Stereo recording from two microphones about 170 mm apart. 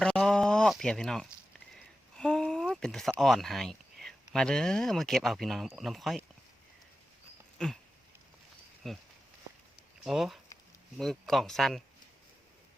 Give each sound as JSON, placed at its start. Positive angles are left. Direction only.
{"t": 0.0, "sound": "a sound", "side_deg": 5}
{"t": 3.2, "sound": "speech", "side_deg": 0}
{"t": 7.6, "sound": "speech", "side_deg": 5}
{"t": 8.8, "sound": "speech", "side_deg": 0}